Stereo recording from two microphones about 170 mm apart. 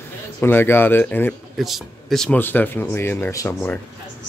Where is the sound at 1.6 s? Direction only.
Centre (ahead or behind).